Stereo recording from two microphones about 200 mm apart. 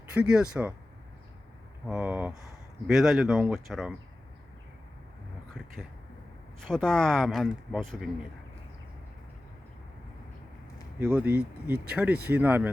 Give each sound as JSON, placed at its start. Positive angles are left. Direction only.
{"t": 0.1, "sound": "speech", "side_deg": -5}
{"t": 1.9, "sound": "speech", "side_deg": -5}
{"t": 5.5, "sound": "speech", "side_deg": 0}
{"t": 11.0, "sound": "speech", "side_deg": -5}